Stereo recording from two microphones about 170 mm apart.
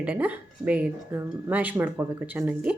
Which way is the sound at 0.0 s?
10° right (ahead or behind).